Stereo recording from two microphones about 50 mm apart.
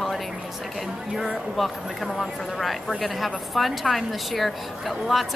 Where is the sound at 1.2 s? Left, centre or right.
Centre.